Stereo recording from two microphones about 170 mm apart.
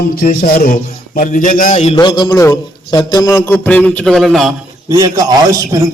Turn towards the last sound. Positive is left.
turn(degrees=-20)  # may be behind; listen again after turning